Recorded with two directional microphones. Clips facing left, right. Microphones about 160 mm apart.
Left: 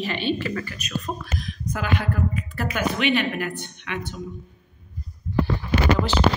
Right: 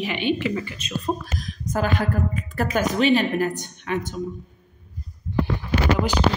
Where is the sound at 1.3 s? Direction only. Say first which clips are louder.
Right 4 dB; 40° right (ahead or behind).